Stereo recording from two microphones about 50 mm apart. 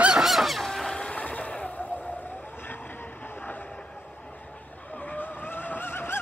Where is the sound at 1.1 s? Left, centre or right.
Left.